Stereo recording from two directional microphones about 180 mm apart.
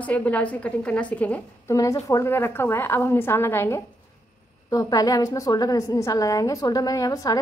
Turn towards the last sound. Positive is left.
turn(degrees=20)  # may be behind; listen again after turning